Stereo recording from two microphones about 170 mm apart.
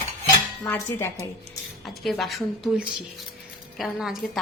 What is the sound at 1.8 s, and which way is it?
Speech, centre (ahead or behind).